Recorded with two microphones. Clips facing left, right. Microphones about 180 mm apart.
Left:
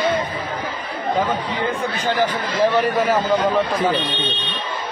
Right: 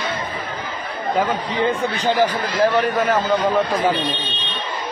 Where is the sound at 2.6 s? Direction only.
Centre (ahead or behind).